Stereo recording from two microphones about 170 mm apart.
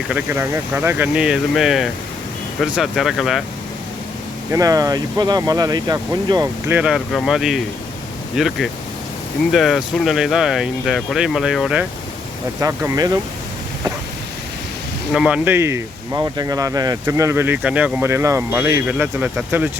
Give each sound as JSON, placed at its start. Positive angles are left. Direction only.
{"t": 0.1, "sound": "speech", "side_deg": -10}
{"t": 4.5, "sound": "speech", "side_deg": -20}
{"t": 12.5, "sound": "speech", "side_deg": -15}
{"t": 15.1, "sound": "speech", "side_deg": -5}